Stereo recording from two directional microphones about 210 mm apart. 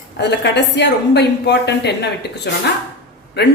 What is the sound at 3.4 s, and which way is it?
Speech, 50° left (ahead or behind).